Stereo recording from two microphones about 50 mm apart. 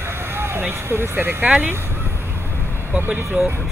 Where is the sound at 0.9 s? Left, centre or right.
Right.